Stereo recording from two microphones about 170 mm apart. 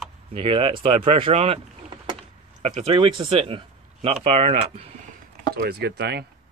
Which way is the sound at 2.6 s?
40° right (ahead or behind).